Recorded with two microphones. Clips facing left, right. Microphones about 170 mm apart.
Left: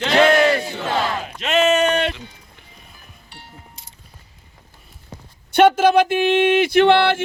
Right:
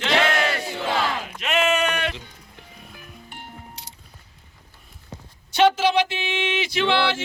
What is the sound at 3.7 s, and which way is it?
Music, 75° right (ahead or behind).